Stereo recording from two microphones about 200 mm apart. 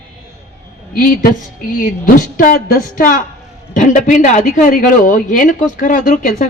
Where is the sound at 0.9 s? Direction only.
45° left (ahead or behind).